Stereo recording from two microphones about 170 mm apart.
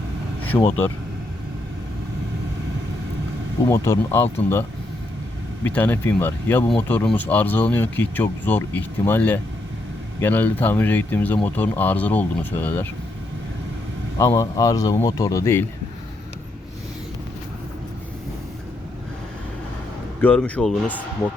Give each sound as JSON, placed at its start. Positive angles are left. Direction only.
{"t": 0.5, "sound": "speech", "side_deg": 15}
{"t": 4.1, "sound": "speech", "side_deg": 15}
{"t": 5.6, "sound": "speech", "side_deg": 10}
{"t": 14.2, "sound": "speech", "side_deg": 15}
{"t": 20.2, "sound": "speech", "side_deg": 5}